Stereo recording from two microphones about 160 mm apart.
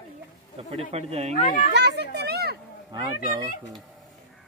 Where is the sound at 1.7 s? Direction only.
90° right.